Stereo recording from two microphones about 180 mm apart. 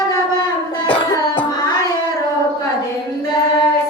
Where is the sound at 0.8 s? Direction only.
30° left (ahead or behind).